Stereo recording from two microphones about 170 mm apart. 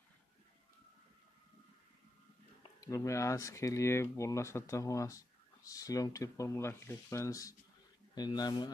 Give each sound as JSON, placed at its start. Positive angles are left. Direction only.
{"t": 2.6, "sound": "speech", "side_deg": 20}